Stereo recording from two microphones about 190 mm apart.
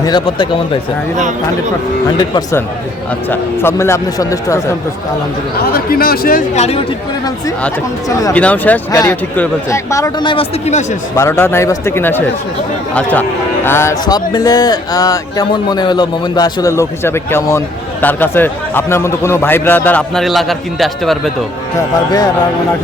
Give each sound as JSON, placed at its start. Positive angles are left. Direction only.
{"t": 0.0, "sound": "speech", "side_deg": 25}
{"t": 2.1, "sound": "speech", "side_deg": 25}
{"t": 3.2, "sound": "a man's voice", "side_deg": 10}
{"t": 5.7, "sound": "speech", "side_deg": 50}
{"t": 6.6, "sound": "speech", "side_deg": 35}
{"t": 8.3, "sound": "a man's voice", "side_deg": 5}
{"t": 11.2, "sound": "a man's voice", "side_deg": 15}